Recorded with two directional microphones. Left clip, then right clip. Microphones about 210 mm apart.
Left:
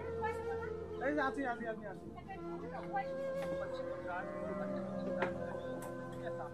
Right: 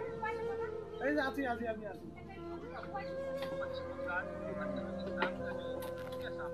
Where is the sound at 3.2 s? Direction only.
Centre (ahead or behind).